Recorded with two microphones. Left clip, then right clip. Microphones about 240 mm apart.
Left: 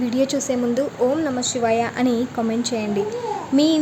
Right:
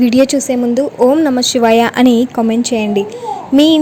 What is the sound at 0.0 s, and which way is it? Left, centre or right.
A woman's voice, right.